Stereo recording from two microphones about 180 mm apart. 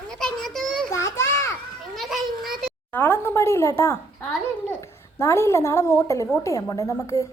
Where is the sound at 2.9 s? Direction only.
10° left (ahead or behind).